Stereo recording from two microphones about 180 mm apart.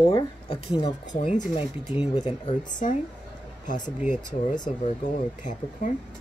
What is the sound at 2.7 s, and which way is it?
Speech, 45° left (ahead or behind).